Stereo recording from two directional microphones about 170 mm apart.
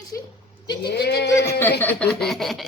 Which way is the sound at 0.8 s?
75° left (ahead or behind).